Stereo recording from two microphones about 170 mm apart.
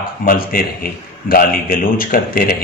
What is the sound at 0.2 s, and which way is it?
A man's voice, 55° left (ahead or behind).